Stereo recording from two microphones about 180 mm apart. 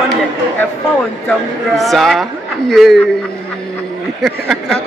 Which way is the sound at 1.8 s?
Centre (ahead or behind).